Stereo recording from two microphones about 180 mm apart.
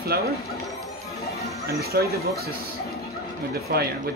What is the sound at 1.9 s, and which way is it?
Speech, 60° right (ahead or behind).